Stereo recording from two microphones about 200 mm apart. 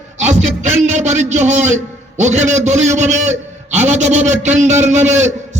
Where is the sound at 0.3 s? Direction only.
35° right (ahead or behind).